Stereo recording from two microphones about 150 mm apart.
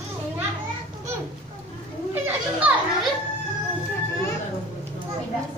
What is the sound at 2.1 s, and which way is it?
Children playing, 10° right (ahead or behind).